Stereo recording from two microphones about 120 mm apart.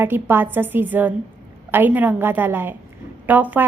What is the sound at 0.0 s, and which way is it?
A woman's voice, 20° right (ahead or behind).